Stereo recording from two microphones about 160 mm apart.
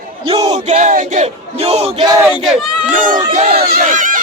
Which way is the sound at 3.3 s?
45° right (ahead or behind).